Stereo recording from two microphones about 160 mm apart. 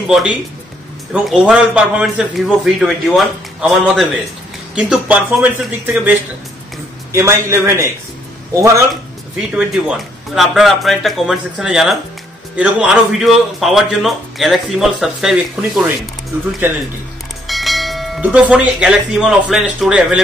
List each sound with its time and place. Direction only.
1.1 s a man's voice: 5° right (ahead or behind)
9.5 s a man's voice: 5° right (ahead or behind)
17.5 s speech: centre (ahead or behind)